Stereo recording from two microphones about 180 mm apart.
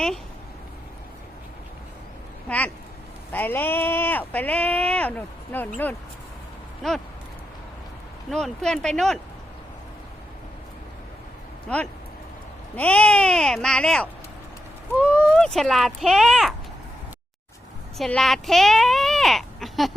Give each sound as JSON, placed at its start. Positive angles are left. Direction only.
{"t": 2.5, "sound": "speech", "side_deg": 5}
{"t": 8.3, "sound": "speech", "side_deg": 0}
{"t": 12.7, "sound": "speech", "side_deg": 10}
{"t": 17.9, "sound": "speech", "side_deg": 0}